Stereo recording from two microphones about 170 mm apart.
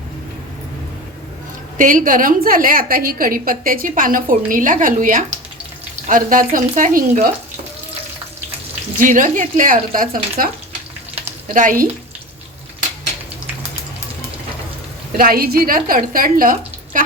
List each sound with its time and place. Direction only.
1.8 s a woman's voice: 50° right (ahead or behind)
9.0 s a woman's voice: 50° right (ahead or behind)
11.1 s frying: 45° right (ahead or behind)
15.2 s a woman's voice: 60° right (ahead or behind)